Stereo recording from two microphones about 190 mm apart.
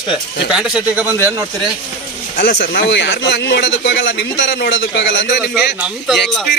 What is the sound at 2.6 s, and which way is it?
Speech, 70° left (ahead or behind).